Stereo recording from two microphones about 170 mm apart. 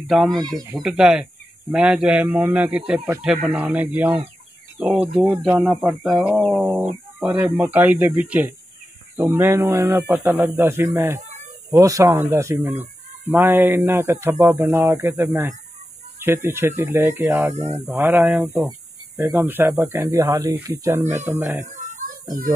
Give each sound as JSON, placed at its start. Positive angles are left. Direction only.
{"t": 0.1, "sound": "speech", "side_deg": 0}
{"t": 6.6, "sound": "speech", "side_deg": -10}
{"t": 21.6, "sound": "a sound", "side_deg": -45}